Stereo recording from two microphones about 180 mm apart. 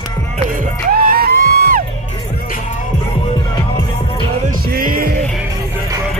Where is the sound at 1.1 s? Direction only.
55° right (ahead or behind).